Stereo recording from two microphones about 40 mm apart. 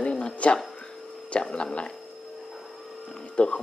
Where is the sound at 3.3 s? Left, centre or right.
Left.